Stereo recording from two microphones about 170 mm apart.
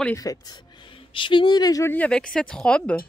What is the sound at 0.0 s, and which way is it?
Speech, 20° left (ahead or behind).